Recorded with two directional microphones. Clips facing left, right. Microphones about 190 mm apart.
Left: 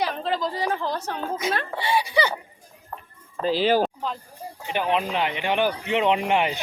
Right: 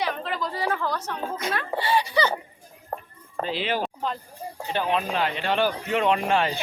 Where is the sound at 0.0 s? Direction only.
30° left (ahead or behind).